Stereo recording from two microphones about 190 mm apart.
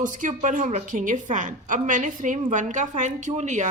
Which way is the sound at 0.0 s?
40° right (ahead or behind).